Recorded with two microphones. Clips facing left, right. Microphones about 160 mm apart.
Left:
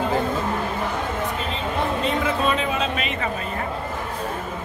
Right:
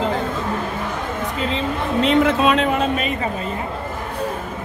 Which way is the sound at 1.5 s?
85° right.